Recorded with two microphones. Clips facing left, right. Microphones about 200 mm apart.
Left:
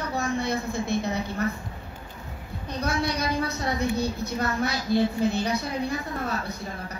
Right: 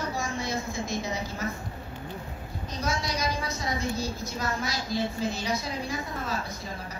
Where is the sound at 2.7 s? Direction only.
60° left (ahead or behind).